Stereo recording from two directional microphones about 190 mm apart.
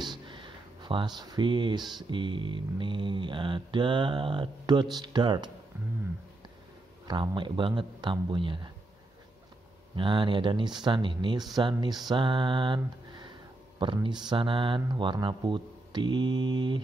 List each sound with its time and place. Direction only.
0.0 s a sound: 25° right (ahead or behind)
2.0 s speech: 25° right (ahead or behind)
7.1 s speech: 25° right (ahead or behind)
9.9 s speech: 25° right (ahead or behind)
12.0 s mantra: 25° right (ahead or behind)
14.0 s speech: 25° right (ahead or behind)